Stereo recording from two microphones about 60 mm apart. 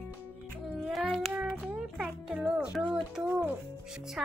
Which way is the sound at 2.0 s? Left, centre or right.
Centre.